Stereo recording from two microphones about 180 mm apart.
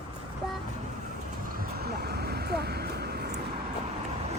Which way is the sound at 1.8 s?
60° right (ahead or behind).